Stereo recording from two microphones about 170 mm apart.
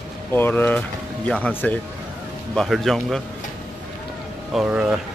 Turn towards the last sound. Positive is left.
turn(degrees=-5)  # may be behind; listen again after turning